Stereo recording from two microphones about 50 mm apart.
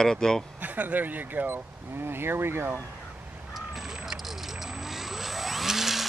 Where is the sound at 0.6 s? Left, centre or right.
Right.